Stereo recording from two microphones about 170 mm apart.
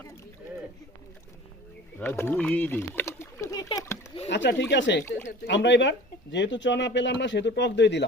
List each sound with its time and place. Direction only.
2.0 s a sound: 15° left (ahead or behind)
4.3 s speech: 90° left
5.0 s speech: 15° left (ahead or behind)
5.5 s speech: 90° left